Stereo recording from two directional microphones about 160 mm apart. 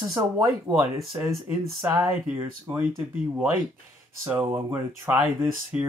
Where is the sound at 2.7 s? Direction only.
25° right (ahead or behind).